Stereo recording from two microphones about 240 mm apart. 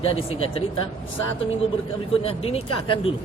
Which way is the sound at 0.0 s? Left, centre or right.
Left.